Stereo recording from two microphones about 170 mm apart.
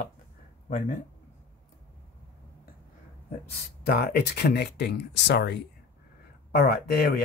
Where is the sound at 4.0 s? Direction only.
70° left (ahead or behind).